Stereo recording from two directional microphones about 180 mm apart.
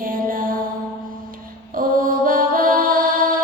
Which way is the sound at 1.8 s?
50° right (ahead or behind).